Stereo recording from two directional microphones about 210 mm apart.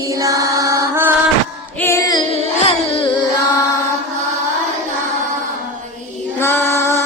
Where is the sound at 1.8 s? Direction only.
15° left (ahead or behind).